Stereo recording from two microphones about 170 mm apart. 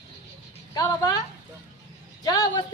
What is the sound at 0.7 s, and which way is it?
A woman's voice, 20° left (ahead or behind).